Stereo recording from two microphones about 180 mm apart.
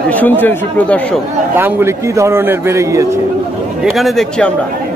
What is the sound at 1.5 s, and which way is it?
A man's voice, 15° right (ahead or behind).